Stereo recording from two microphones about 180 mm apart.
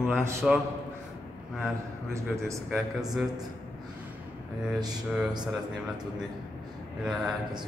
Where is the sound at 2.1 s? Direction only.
15° right (ahead or behind).